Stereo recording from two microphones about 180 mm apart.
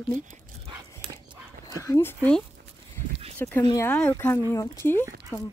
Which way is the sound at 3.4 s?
10° left (ahead or behind).